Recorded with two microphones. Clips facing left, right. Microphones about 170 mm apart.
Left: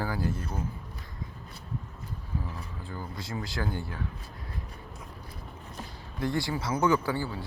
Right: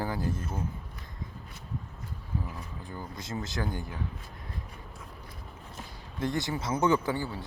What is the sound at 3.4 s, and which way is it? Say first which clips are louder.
Speech: left 1 dB; 20° right (ahead or behind).